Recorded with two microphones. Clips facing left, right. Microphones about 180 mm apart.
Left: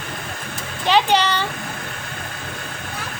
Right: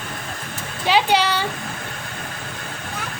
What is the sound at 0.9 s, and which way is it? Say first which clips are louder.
Speech: left 1 dB; 10° right (ahead or behind).